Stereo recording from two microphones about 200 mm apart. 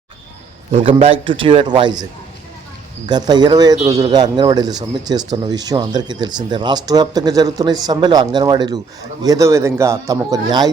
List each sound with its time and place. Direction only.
0.7 s speech: 30° right (ahead or behind)
3.1 s a man's voice: 20° right (ahead or behind)